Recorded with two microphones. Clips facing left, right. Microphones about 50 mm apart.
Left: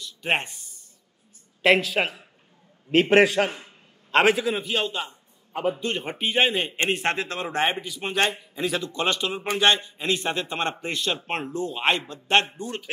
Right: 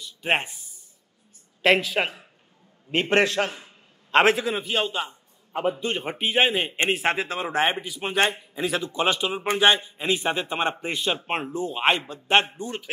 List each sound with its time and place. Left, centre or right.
0.0 s a sound: centre
1.6 s a man's voice: centre
4.1 s a man's voice: centre